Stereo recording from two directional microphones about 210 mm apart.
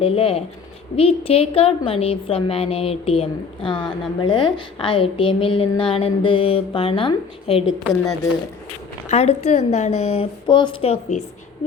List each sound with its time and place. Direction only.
0.0 s a woman's voice: 25° left (ahead or behind)
3.8 s speech: 5° left (ahead or behind)
4.2 s a woman's voice: 20° left (ahead or behind)
9.0 s a woman's voice: 30° left (ahead or behind)